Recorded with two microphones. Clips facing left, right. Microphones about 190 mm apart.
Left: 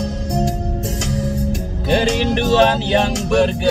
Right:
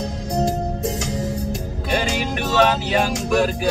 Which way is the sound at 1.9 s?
30° left (ahead or behind).